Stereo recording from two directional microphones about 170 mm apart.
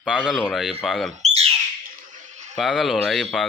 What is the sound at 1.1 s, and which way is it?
Bird, 40° right (ahead or behind).